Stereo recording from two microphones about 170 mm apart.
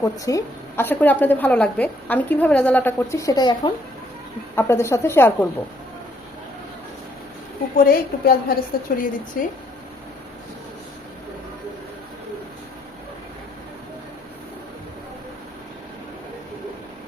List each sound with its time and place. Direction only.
0.0 s a woman's voice: 20° left (ahead or behind)
7.8 s a woman's voice: 60° left (ahead or behind)